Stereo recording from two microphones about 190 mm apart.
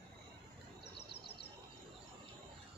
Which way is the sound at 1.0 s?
60° left (ahead or behind).